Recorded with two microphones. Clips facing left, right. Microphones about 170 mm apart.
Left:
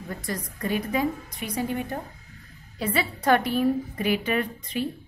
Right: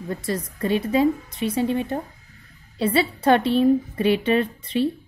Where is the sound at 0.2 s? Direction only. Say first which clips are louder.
Right 4 dB; 25° right (ahead or behind).